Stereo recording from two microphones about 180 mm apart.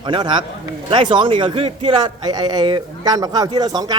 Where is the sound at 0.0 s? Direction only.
25° right (ahead or behind).